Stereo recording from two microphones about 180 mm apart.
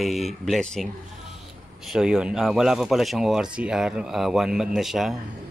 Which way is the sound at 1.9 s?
5° right (ahead or behind).